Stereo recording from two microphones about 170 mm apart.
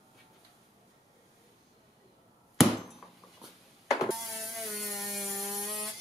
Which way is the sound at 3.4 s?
Centre (ahead or behind).